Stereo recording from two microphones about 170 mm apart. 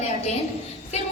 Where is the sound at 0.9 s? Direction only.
40° left (ahead or behind).